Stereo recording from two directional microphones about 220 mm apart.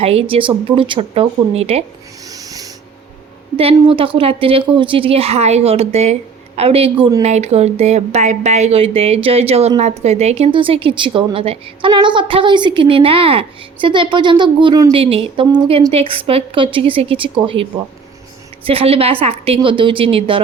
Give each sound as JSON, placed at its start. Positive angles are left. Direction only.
{"t": 0.3, "sound": "a woman's voice", "side_deg": -25}
{"t": 2.2, "sound": "snort", "side_deg": -15}
{"t": 3.6, "sound": "a woman's voice", "side_deg": -25}